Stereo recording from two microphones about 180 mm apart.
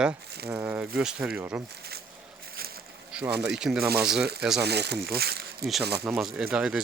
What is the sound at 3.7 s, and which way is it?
Speech, 60° right (ahead or behind).